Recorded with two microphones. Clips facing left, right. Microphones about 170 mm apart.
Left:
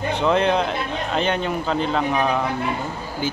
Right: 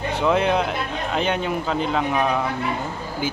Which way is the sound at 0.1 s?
10° right (ahead or behind).